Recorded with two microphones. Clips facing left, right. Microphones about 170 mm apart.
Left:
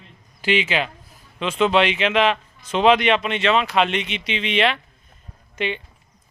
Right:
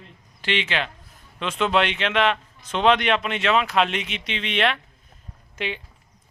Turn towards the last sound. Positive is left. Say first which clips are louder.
# left 4 dB
turn(degrees=0)  # may be behind; listen again after turning